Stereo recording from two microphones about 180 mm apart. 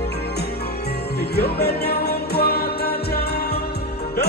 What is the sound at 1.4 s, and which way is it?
Music, 65° left (ahead or behind).